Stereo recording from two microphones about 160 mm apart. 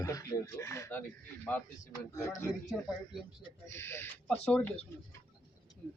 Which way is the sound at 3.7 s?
15° left (ahead or behind).